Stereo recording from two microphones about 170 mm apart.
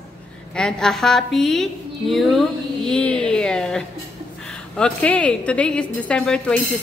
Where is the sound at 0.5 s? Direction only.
5° left (ahead or behind).